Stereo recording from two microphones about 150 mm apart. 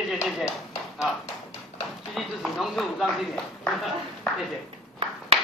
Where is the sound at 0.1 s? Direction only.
Centre (ahead or behind).